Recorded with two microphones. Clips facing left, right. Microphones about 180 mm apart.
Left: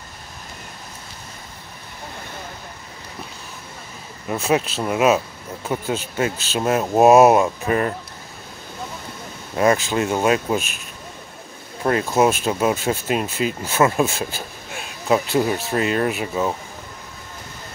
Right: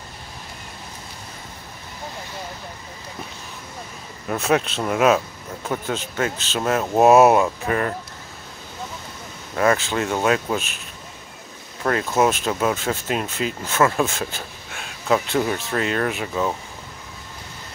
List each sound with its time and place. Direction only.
4.3 s speech: 5° left (ahead or behind); by 7.9 s 25° left (ahead or behind)
9.6 s speech: 15° left (ahead or behind)
11.8 s speech: 25° left (ahead or behind)
12.1 s speech: 10° left (ahead or behind)